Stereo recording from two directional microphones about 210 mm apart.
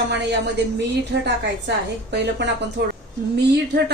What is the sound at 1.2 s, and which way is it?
A woman's voice, 55° right (ahead or behind).